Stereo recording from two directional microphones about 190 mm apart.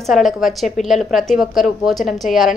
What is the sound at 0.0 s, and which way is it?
A woman's voice, centre (ahead or behind).